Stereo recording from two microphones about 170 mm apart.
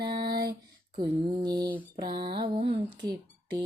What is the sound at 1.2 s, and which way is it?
Music, 25° right (ahead or behind).